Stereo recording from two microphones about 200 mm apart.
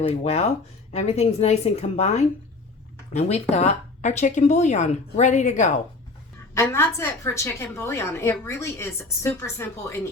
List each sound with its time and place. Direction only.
0.2 s a woman's voice: 30° left (ahead or behind)
6.5 s a woman's voice: 15° left (ahead or behind)